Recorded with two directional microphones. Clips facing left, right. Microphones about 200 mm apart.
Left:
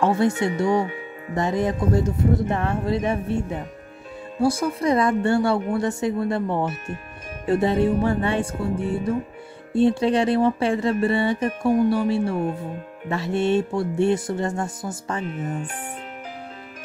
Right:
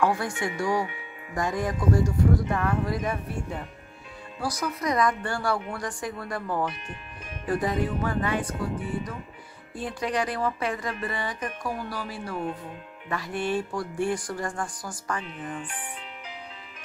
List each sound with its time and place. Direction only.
0.0 s speech: 25° left (ahead or behind)
4.4 s speech: 25° left (ahead or behind)
15.2 s speech: 45° left (ahead or behind)